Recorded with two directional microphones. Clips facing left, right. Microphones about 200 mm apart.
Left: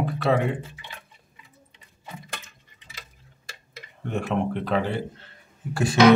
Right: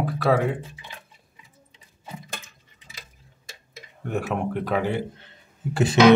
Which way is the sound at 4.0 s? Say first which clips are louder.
Left 1 dB; 10° right (ahead or behind).